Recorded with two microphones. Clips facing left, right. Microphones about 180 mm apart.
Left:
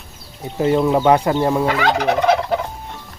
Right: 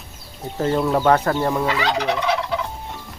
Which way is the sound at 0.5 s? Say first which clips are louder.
Left 4 dB; 15° left (ahead or behind).